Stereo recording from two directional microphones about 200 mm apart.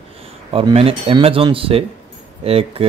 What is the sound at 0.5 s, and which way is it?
Speech, 30° right (ahead or behind).